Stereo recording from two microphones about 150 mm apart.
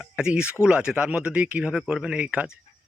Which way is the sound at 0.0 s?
5° right (ahead or behind).